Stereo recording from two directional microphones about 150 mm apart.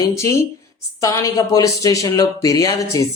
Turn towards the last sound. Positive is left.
turn(degrees=20)  # may be behind; listen again after turning